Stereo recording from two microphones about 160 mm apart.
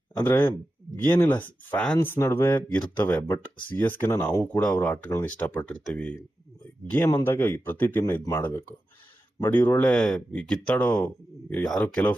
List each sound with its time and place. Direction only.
0.2 s speech: 15° left (ahead or behind)